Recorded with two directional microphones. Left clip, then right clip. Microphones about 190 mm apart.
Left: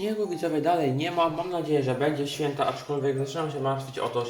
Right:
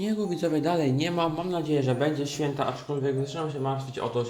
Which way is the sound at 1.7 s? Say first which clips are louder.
Left 1 dB; 55° right (ahead or behind).